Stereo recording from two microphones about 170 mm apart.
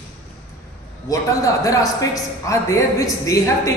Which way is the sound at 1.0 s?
20° left (ahead or behind).